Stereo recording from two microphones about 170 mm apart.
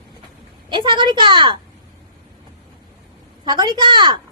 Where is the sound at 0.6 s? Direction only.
30° right (ahead or behind).